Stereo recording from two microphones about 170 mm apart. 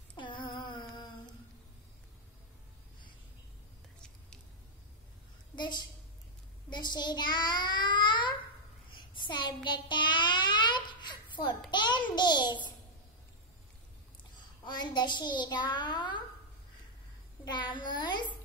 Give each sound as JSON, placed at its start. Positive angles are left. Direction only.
{"t": 0.1, "sound": "humming", "side_deg": 30}
{"t": 5.6, "sound": "a child's voice", "side_deg": 25}
{"t": 8.9, "sound": "child singing", "side_deg": 30}
{"t": 11.7, "sound": "a child's voice", "side_deg": 25}
{"t": 14.6, "sound": "a child's voice", "side_deg": 25}
{"t": 17.5, "sound": "a child's voice", "side_deg": 25}